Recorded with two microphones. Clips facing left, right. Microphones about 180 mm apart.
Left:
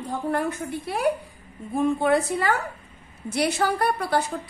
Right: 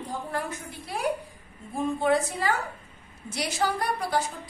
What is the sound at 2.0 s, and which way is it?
A woman's voice, 60° left (ahead or behind).